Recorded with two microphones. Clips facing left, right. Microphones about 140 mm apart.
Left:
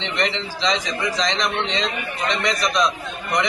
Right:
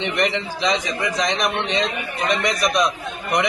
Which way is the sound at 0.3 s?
55° right (ahead or behind).